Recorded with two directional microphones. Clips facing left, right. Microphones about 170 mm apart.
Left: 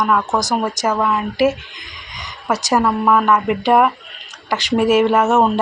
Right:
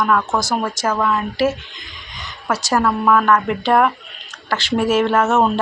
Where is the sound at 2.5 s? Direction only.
10° left (ahead or behind).